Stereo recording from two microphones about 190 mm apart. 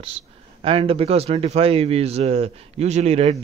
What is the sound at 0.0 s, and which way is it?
Speech, 30° right (ahead or behind).